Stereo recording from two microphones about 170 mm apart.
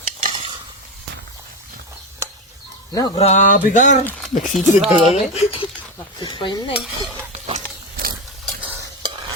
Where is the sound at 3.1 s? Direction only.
40° left (ahead or behind).